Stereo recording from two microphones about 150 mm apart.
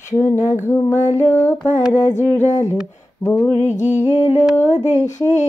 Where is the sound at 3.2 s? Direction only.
15° left (ahead or behind).